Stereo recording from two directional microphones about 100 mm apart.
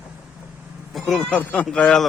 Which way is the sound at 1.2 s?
15° left (ahead or behind).